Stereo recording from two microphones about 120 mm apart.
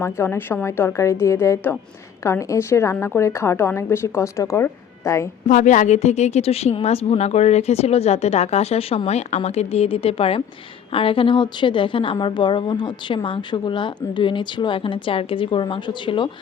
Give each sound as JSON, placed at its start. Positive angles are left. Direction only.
{"t": 0.0, "sound": "a woman's voice", "side_deg": 20}
{"t": 5.5, "sound": "a woman's voice", "side_deg": 90}